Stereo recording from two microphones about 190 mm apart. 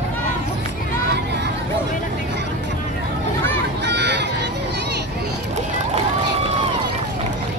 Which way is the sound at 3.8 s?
65° right (ahead or behind).